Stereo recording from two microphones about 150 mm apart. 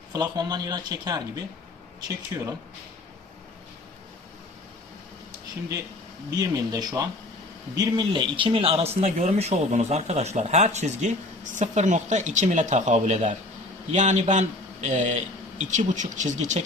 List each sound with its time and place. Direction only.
0.1 s speech: 25° right (ahead or behind)
6.3 s speech: 25° right (ahead or behind); by 16.6 s 55° right (ahead or behind)